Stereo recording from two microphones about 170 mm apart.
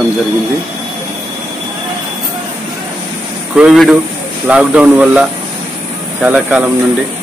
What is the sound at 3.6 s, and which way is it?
Speech, 5° right (ahead or behind).